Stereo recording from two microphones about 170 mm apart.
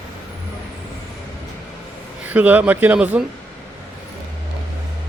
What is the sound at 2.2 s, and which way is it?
A man's voice, 10° right (ahead or behind).